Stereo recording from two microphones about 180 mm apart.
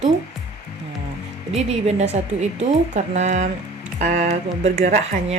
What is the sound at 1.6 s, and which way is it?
A woman's voice, 35° right (ahead or behind).